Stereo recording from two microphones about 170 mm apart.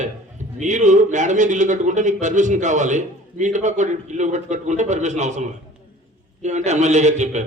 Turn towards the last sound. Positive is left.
turn(degrees=-45)  # may be behind; listen again after turning